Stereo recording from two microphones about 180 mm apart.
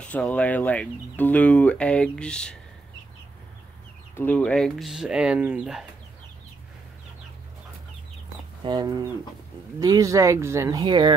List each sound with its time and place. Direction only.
0.0 s speech: 5° left (ahead or behind)
4.2 s speech: 10° left (ahead or behind)
8.6 s speech: 20° right (ahead or behind)